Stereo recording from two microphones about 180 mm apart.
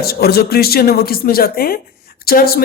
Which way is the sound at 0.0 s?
60° left (ahead or behind).